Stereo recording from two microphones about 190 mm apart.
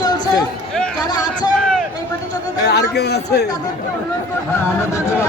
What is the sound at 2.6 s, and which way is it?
Speech, 60° left (ahead or behind).